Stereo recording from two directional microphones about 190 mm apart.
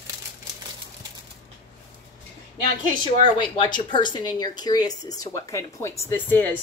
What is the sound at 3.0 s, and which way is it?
A woman's voice, 25° left (ahead or behind).